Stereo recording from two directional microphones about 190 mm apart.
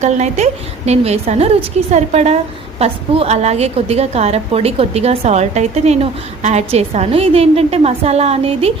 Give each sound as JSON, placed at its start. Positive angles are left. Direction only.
{"t": 0.0, "sound": "a woman's voice", "side_deg": -35}